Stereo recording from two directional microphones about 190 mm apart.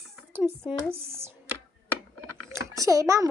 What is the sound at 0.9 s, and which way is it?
Speech, 10° right (ahead or behind).